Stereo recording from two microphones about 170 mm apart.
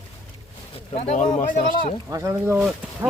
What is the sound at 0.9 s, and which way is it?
Speech, 45° left (ahead or behind).